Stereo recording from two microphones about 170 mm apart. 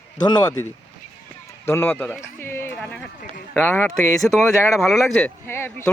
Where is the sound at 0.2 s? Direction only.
25° left (ahead or behind).